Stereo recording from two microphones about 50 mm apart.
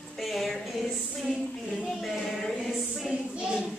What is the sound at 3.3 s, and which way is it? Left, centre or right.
Child singing, centre.